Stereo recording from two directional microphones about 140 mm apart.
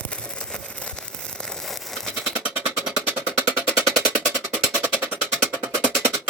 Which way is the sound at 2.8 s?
15° right (ahead or behind).